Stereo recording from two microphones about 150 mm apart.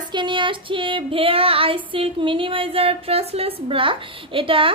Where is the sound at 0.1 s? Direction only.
30° right (ahead or behind).